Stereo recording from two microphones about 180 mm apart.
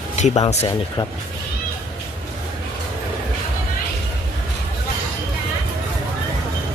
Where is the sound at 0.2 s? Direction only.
40° left (ahead or behind).